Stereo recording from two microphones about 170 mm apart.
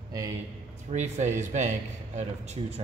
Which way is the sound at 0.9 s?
45° right (ahead or behind).